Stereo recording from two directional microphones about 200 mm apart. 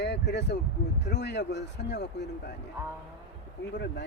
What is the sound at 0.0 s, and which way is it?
Speech, 55° left (ahead or behind).